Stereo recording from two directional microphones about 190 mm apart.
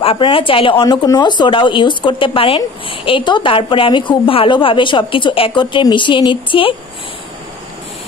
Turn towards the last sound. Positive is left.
turn(degrees=25)  # may be behind; listen again after turning